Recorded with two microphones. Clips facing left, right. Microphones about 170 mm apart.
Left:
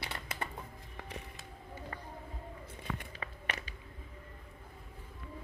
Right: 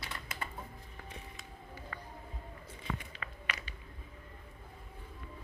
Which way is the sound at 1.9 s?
40° left (ahead or behind).